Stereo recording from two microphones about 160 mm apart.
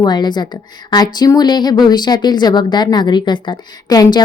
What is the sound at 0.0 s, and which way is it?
A woman's voice, 25° left (ahead or behind).